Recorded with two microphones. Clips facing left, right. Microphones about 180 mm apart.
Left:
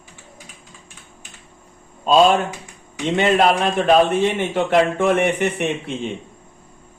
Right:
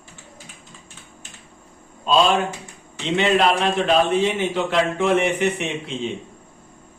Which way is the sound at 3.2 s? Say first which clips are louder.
Left 2 dB; 50° left (ahead or behind).